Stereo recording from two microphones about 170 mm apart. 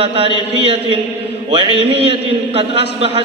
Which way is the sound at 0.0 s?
35° right (ahead or behind).